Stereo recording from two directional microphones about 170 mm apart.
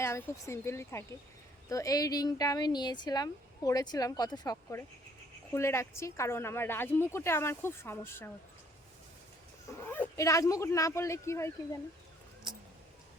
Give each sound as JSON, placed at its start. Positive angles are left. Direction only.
{"t": 0.0, "sound": "a woman's voice", "side_deg": 15}
{"t": 9.7, "sound": "a woman's voice", "side_deg": 10}